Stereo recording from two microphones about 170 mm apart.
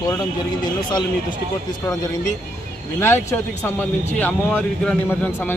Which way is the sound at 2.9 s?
15° left (ahead or behind).